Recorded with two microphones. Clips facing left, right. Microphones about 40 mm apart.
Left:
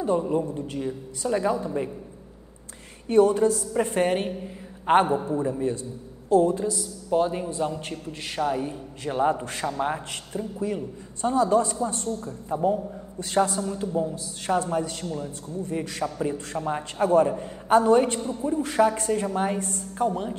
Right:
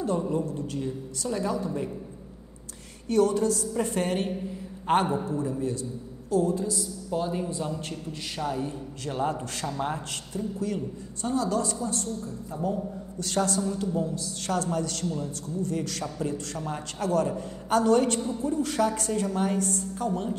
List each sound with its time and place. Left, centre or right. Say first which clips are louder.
0.0 s a man's voice: left 3 dB; left
3.1 s a man's voice: left 4 dB; left